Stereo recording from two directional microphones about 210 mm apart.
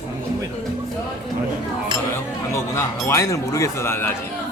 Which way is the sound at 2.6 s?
15° left (ahead or behind).